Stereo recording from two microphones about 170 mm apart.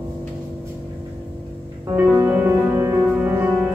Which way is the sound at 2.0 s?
10° right (ahead or behind).